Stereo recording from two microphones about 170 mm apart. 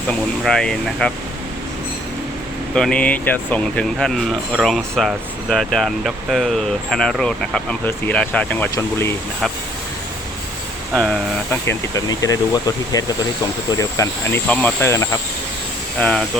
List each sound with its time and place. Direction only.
0.1 s speech: 5° left (ahead or behind)
2.7 s speech: 5° left (ahead or behind)
11.6 s speech: 15° left (ahead or behind)